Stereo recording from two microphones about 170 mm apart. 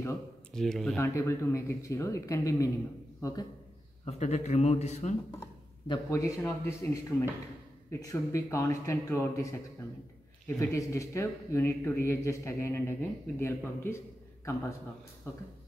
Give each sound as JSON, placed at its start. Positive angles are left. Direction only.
{"t": 0.5, "sound": "speech", "side_deg": 5}
{"t": 0.9, "sound": "a man's voice", "side_deg": 15}
{"t": 4.0, "sound": "a man's voice", "side_deg": 40}
{"t": 5.9, "sound": "a man's voice", "side_deg": 20}